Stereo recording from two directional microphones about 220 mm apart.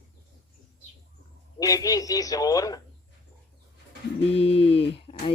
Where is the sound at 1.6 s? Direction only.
15° left (ahead or behind).